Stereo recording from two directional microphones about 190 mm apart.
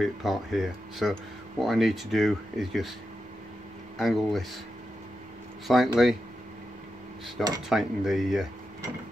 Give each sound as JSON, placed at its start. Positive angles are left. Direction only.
{"t": 0.0, "sound": "speech", "side_deg": 0}
{"t": 4.0, "sound": "speech", "side_deg": 0}
{"t": 5.7, "sound": "speech", "side_deg": 0}
{"t": 7.4, "sound": "speech", "side_deg": 0}